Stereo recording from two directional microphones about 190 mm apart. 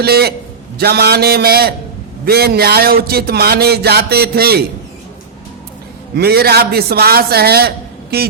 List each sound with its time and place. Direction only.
0.0 s speech: 55° right (ahead or behind)
6.1 s speech: 55° right (ahead or behind)